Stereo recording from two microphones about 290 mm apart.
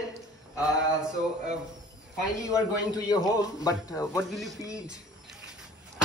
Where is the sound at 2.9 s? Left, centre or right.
Centre.